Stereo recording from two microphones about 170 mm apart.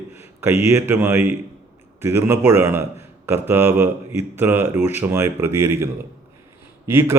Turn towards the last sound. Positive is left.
turn(degrees=-15)  # may be behind; listen again after turning